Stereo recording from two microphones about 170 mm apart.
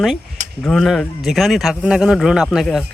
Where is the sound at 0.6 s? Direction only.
Centre (ahead or behind).